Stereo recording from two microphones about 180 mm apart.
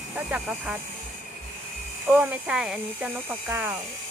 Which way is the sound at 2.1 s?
5° right (ahead or behind).